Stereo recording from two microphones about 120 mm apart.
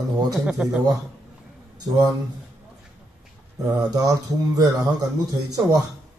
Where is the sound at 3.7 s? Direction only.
30° right (ahead or behind).